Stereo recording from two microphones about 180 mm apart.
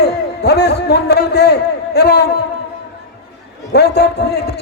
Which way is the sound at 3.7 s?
65° left (ahead or behind).